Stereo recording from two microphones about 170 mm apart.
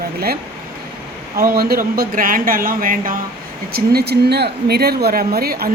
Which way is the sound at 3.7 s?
65° right (ahead or behind).